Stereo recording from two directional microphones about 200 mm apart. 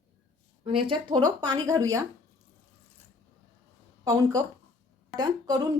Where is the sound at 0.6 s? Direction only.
25° right (ahead or behind).